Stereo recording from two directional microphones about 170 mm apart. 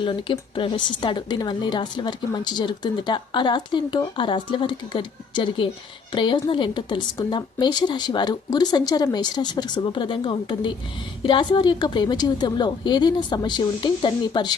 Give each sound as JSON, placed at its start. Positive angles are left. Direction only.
{"t": 0.0, "sound": "speech", "side_deg": 30}